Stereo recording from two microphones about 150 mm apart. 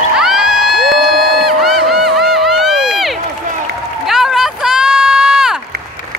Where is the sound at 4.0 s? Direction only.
Centre (ahead or behind).